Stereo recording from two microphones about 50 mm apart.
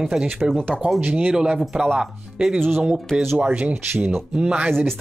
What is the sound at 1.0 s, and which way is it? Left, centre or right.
Speech, right.